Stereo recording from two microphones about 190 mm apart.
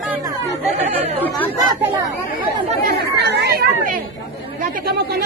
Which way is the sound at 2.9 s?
60° right (ahead or behind).